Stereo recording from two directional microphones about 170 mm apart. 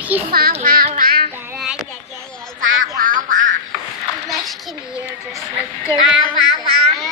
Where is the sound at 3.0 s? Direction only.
50° right (ahead or behind).